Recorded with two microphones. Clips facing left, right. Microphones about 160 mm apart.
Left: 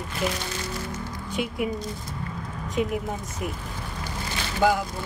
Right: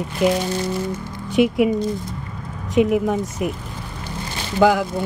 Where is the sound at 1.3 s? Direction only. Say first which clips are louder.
Right 12 dB; 75° right (ahead or behind).